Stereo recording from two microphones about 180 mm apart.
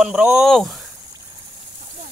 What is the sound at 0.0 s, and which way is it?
Speech, 5° right (ahead or behind).